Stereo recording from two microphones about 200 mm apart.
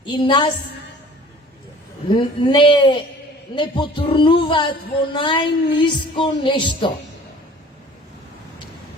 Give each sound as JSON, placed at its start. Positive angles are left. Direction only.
{"t": 0.0, "sound": "speech", "side_deg": 25}
{"t": 2.0, "sound": "speech", "side_deg": 25}